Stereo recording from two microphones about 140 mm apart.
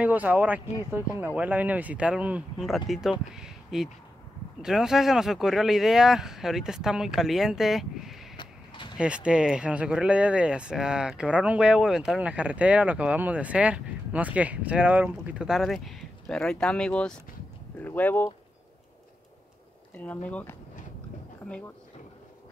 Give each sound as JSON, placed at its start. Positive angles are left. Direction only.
{"t": 0.0, "sound": "speech", "side_deg": -10}
{"t": 8.4, "sound": "a sound", "side_deg": 35}
{"t": 8.9, "sound": "speech", "side_deg": -5}
{"t": 19.9, "sound": "speech", "side_deg": 10}